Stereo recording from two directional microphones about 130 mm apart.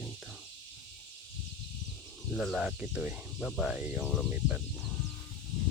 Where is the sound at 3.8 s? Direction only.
10° right (ahead or behind).